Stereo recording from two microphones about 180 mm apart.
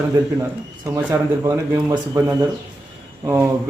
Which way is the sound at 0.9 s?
15° right (ahead or behind).